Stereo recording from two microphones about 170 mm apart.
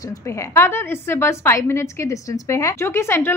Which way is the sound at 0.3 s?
15° left (ahead or behind).